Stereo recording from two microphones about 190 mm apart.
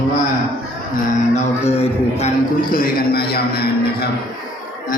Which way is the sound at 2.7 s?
50° left (ahead or behind).